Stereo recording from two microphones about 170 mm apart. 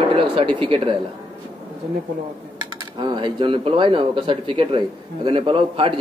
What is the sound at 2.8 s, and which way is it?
Speech, 25° right (ahead or behind).